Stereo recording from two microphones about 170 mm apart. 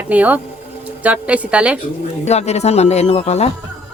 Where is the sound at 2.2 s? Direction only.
40° left (ahead or behind).